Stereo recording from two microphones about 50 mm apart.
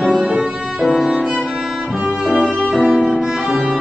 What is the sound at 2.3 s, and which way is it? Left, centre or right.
Music, right.